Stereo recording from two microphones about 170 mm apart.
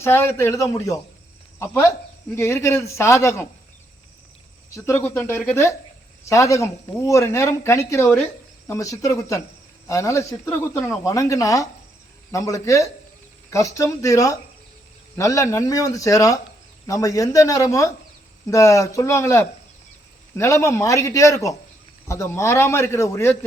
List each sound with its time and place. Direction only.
0.0 s speech: 15° left (ahead or behind)
4.7 s speech: 15° left (ahead or behind)